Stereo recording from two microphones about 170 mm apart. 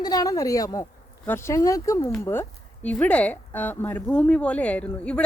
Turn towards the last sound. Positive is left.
turn(degrees=10)  # may be behind; listen again after turning